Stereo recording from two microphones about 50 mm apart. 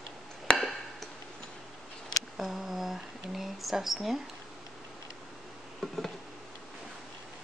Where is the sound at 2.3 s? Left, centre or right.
Centre.